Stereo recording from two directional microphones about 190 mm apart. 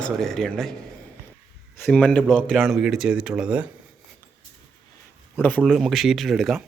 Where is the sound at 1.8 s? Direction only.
5° left (ahead or behind).